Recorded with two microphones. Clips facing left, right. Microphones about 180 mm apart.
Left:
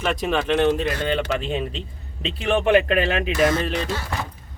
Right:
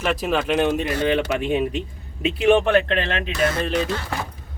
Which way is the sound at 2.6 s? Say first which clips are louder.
Left 2 dB; 10° left (ahead or behind).